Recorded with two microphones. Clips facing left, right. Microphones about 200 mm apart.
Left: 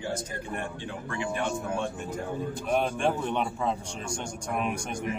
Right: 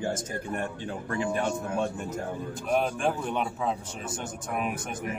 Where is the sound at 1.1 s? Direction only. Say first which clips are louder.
Right 2 dB; 40° right (ahead or behind).